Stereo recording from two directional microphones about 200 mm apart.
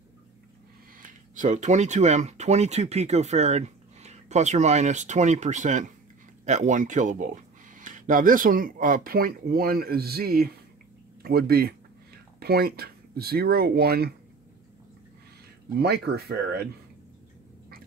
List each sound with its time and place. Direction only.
1.0 s speech: 40° right (ahead or behind)
15.8 s speech: 55° right (ahead or behind)